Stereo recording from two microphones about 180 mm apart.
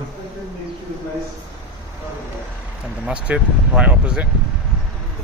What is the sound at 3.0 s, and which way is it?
Speech, 5° right (ahead or behind).